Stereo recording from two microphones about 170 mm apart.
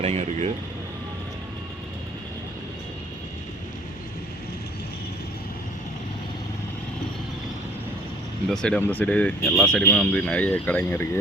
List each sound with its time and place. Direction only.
0.0 s air conditioning: 40° right (ahead or behind)
8.4 s speech: 5° left (ahead or behind)